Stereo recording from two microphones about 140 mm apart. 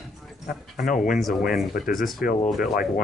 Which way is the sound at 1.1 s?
Centre (ahead or behind).